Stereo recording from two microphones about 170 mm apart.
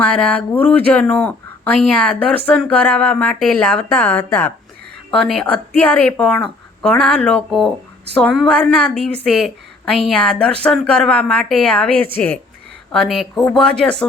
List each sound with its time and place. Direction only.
0.0 s a woman's voice: 10° left (ahead or behind)